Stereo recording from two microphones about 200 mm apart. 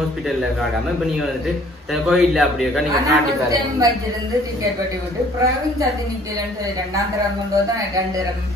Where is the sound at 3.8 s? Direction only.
15° right (ahead or behind).